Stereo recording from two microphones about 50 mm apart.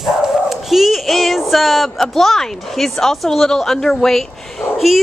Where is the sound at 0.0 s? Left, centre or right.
Centre.